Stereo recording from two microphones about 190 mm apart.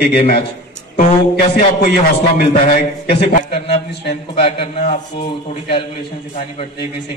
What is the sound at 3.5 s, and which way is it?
A man's voice, 35° left (ahead or behind).